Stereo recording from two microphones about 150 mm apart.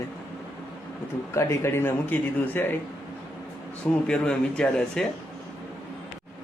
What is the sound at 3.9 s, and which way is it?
Speech, 5° left (ahead or behind).